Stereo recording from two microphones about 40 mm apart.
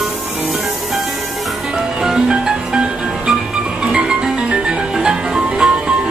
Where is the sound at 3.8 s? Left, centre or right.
Right.